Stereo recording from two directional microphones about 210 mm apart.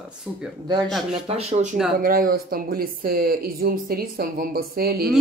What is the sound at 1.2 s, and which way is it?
Speech, 30° right (ahead or behind).